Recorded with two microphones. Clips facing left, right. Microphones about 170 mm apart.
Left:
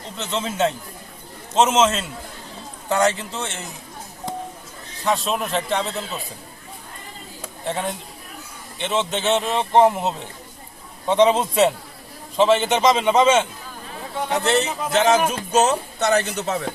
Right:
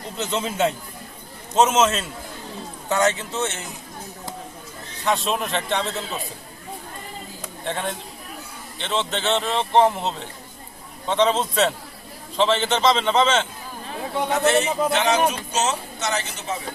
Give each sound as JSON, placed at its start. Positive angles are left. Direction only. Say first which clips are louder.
{"t": 0.3, "sound": "a man's voice", "louder": "left 1 dB", "side_deg": -10}
{"t": 5.0, "sound": "a man's voice", "louder": "left 1 dB", "side_deg": 0}
{"t": 7.4, "sound": "a sound", "louder": "left 2 dB", "side_deg": 5}
{"t": 8.8, "sound": "a man's voice", "louder": "left 2 dB", "side_deg": 15}
{"t": 14.4, "sound": "speech", "louder": "right 3 dB", "side_deg": 40}